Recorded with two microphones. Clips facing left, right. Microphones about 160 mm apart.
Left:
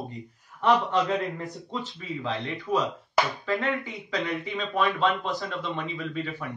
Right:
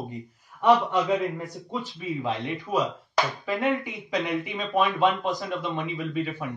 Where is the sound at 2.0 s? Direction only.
15° right (ahead or behind).